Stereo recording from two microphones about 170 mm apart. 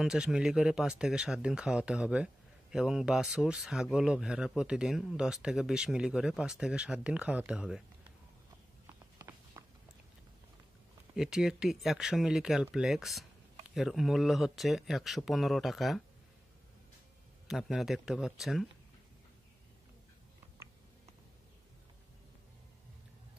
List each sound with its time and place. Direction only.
0.0 s speech: 5° right (ahead or behind)
9.2 s walk: 20° right (ahead or behind)
11.1 s speech: centre (ahead or behind)
17.5 s speech: centre (ahead or behind)